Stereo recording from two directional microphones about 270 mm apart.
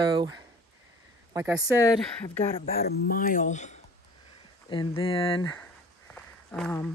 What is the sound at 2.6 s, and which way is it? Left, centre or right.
Speech, left.